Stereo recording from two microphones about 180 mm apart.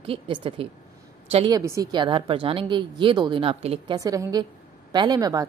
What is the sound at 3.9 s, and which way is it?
A woman's voice, 20° right (ahead or behind).